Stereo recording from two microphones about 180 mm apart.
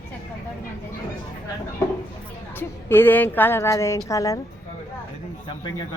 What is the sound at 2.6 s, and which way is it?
Speech, 10° left (ahead or behind).